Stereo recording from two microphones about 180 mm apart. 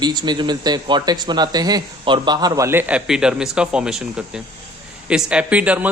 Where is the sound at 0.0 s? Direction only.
25° right (ahead or behind).